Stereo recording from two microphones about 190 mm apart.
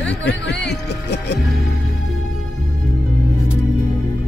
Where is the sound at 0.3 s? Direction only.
60° left (ahead or behind).